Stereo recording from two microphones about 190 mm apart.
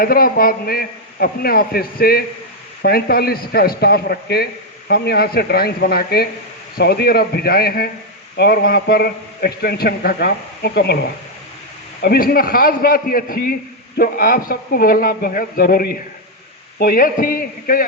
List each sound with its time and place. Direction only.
0.0 s a man's voice: 50° left (ahead or behind)